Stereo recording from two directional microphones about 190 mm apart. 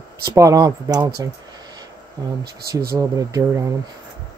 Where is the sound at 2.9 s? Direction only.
20° right (ahead or behind).